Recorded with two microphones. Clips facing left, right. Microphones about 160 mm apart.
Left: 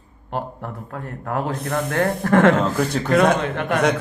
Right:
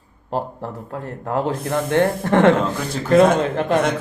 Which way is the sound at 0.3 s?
30° right (ahead or behind).